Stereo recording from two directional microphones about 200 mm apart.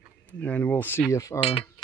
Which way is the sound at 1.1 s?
15° left (ahead or behind).